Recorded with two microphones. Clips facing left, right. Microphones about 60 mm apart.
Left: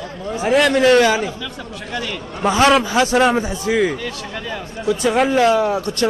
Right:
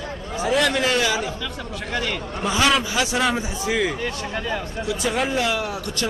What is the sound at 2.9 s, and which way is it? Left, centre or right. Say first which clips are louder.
Speech: left 7 dB; left.